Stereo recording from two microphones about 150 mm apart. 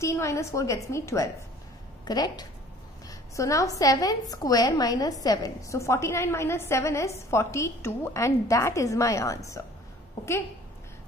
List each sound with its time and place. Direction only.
0.0 s a woman's voice: 20° left (ahead or behind)